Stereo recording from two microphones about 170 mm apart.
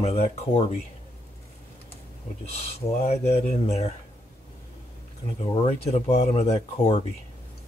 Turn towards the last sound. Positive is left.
turn(degrees=35)  # may be behind; listen again after turning